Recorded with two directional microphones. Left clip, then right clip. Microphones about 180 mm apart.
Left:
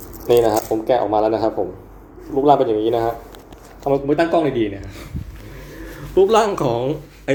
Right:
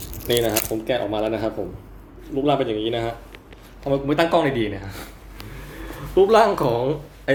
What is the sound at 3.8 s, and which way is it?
Speech, 50° right (ahead or behind).